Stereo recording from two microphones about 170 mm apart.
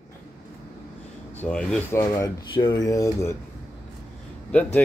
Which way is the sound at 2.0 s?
20° left (ahead or behind).